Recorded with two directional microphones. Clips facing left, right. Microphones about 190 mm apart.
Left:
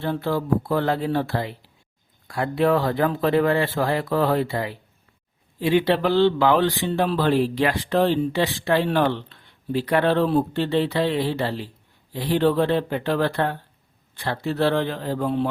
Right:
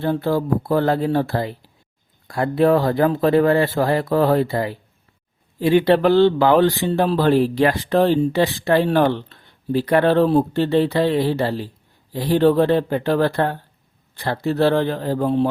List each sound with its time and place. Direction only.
0.0 s speech: 40° right (ahead or behind)